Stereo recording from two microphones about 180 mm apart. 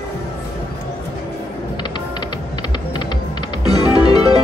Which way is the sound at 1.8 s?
25° left (ahead or behind).